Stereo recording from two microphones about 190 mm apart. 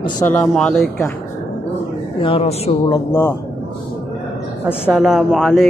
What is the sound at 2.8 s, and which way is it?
Speech, 15° left (ahead or behind).